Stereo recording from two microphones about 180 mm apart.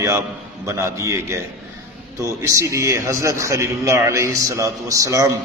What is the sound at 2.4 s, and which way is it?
A man's voice, 15° right (ahead or behind).